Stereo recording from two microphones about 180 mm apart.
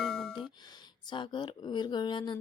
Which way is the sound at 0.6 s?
25° left (ahead or behind).